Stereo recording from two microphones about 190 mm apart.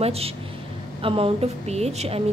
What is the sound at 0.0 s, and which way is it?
Speech, 30° right (ahead or behind).